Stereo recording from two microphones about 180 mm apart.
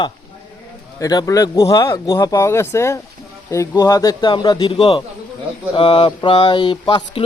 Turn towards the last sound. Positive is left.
turn(degrees=25)  # may be behind; listen again after turning